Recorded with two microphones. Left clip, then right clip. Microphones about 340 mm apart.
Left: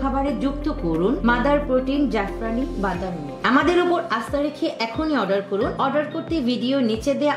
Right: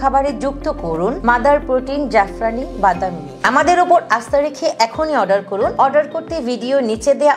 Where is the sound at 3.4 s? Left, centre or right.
Right.